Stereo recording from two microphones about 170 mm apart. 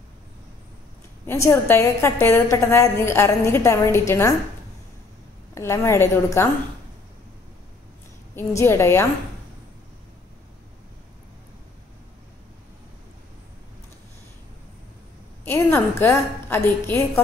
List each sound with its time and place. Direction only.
1.2 s a woman's voice: 15° left (ahead or behind)
5.5 s a woman's voice: 15° left (ahead or behind)
8.4 s a woman's voice: 15° left (ahead or behind)
15.4 s a woman's voice: 15° left (ahead or behind)